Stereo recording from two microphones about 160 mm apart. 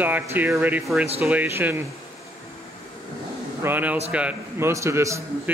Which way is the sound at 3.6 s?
10° right (ahead or behind).